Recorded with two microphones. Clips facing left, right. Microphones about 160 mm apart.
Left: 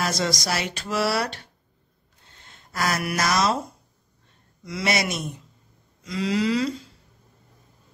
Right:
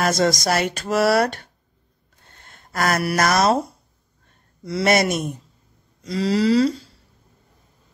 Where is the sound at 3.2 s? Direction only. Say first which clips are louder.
Right 5 dB; 55° right (ahead or behind).